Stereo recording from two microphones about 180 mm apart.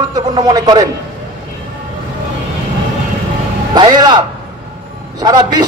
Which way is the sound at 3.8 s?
25° right (ahead or behind).